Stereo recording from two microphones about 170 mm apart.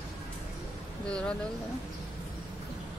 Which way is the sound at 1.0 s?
5° left (ahead or behind).